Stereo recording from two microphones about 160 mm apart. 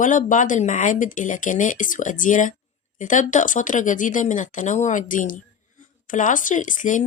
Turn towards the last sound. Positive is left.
turn(degrees=55)  # may be behind; listen again after turning